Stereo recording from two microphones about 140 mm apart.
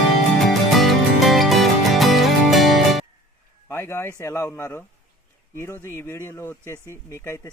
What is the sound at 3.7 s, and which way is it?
Speech, 15° left (ahead or behind).